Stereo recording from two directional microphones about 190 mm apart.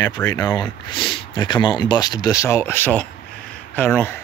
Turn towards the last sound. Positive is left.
turn(degrees=10)  # may be behind; listen again after turning